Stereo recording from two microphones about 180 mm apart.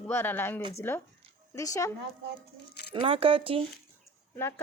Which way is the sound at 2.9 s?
30° right (ahead or behind).